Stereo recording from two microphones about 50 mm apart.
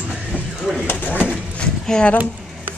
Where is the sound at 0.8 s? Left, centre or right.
Left.